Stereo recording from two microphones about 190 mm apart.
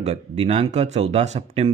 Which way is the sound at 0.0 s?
35° right (ahead or behind).